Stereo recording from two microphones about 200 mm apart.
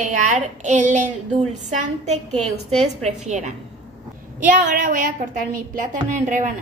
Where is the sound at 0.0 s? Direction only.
40° right (ahead or behind).